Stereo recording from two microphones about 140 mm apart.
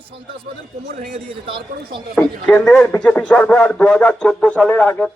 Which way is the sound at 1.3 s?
40° right (ahead or behind).